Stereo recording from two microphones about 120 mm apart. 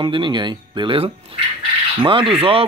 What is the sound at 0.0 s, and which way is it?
Speech, 40° right (ahead or behind).